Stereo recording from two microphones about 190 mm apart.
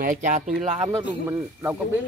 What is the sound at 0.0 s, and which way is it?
Speech, 40° right (ahead or behind).